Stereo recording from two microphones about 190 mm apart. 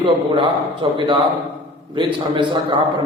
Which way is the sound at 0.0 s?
25° right (ahead or behind).